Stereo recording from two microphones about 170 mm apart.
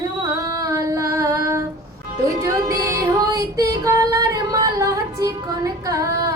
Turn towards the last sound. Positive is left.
turn(degrees=-20)  # may be behind; listen again after turning